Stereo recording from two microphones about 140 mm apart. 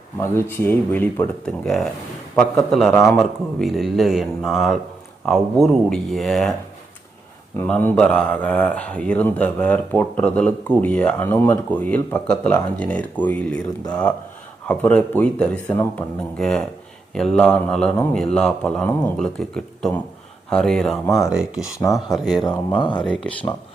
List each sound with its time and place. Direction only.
0.2 s speech: 15° left (ahead or behind)
1.5 s speech: 5° left (ahead or behind)
7.7 s speech: 10° left (ahead or behind)
14.7 s speech: 10° left (ahead or behind)
21.8 s speech: 25° left (ahead or behind)
22.5 s speech: 35° left (ahead or behind)
23.0 s speech: 5° left (ahead or behind)